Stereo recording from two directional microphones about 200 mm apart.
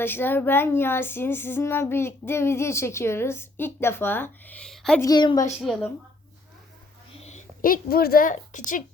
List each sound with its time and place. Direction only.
0.0 s speech: 10° left (ahead or behind)
4.9 s a woman's voice: 20° left (ahead or behind)
5.5 s a woman's voice: 5° left (ahead or behind)
7.2 s a woman's voice: 35° left (ahead or behind)